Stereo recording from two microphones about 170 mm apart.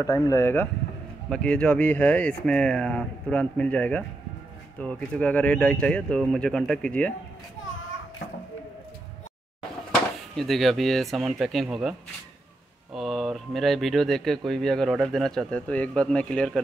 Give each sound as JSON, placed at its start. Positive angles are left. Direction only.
{"t": 0.0, "sound": "speech", "side_deg": 20}
{"t": 10.3, "sound": "speech", "side_deg": 0}
{"t": 12.9, "sound": "speech", "side_deg": 0}